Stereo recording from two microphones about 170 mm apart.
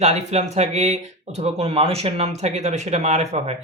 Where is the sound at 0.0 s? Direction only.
40° right (ahead or behind).